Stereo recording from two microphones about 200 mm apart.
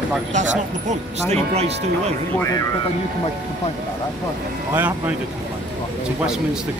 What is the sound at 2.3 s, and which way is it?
Speech, 15° left (ahead or behind).